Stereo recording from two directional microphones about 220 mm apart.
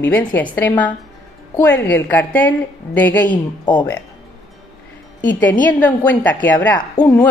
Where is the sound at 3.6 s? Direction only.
20° left (ahead or behind).